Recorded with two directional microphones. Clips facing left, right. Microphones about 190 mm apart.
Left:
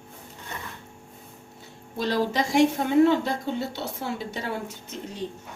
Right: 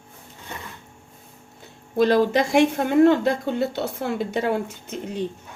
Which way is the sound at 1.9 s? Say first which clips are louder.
Right 7 dB; 55° right (ahead or behind).